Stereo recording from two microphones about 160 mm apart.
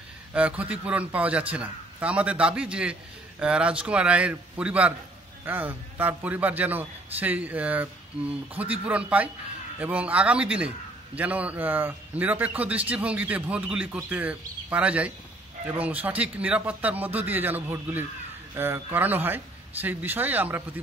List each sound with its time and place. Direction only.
0.3 s a man's voice: 10° right (ahead or behind)